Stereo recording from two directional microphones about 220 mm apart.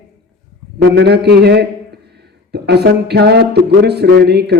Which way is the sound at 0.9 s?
50° right (ahead or behind).